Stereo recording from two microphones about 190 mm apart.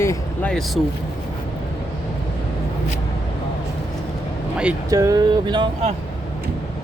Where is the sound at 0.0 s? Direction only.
15° left (ahead or behind).